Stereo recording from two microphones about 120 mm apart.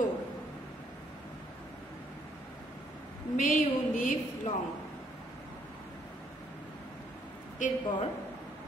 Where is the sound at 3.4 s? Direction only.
90° left.